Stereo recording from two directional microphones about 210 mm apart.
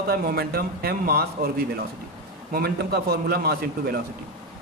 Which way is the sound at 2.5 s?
50° right (ahead or behind).